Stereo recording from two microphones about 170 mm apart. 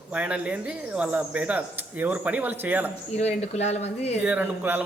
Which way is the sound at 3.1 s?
40° left (ahead or behind).